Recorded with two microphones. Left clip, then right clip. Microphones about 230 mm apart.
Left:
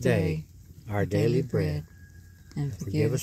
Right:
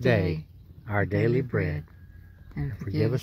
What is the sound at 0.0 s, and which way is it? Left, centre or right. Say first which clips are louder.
Speech: right 2 dB; centre.